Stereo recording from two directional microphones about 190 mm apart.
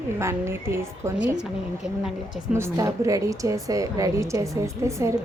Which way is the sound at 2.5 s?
15° right (ahead or behind).